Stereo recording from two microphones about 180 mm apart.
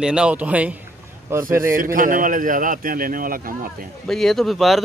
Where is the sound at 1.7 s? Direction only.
50° right (ahead or behind).